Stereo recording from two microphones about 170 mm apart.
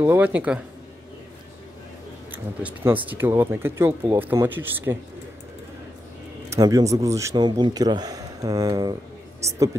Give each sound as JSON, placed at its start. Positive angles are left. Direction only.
{"t": 0.0, "sound": "speech", "side_deg": -10}
{"t": 2.3, "sound": "speech", "side_deg": -10}
{"t": 6.5, "sound": "a man's voice", "side_deg": -20}